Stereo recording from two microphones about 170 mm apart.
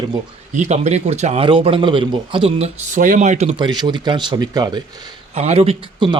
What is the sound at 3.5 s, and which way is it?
Speech, 25° right (ahead or behind).